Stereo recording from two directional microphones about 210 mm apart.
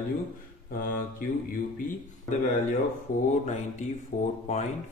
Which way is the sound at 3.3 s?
35° left (ahead or behind).